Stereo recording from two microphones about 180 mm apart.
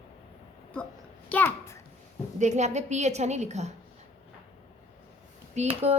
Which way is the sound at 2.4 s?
40° right (ahead or behind).